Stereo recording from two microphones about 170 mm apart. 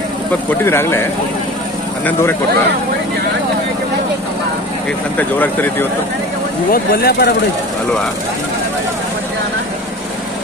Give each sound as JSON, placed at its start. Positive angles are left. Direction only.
{"t": 0.5, "sound": "speech", "side_deg": 15}
{"t": 5.1, "sound": "speech", "side_deg": 10}
{"t": 6.7, "sound": "speech", "side_deg": 60}